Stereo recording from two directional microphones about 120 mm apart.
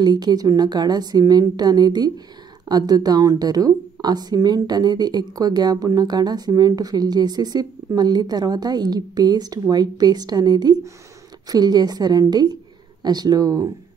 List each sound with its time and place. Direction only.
0.0 s a woman's voice: 35° right (ahead or behind)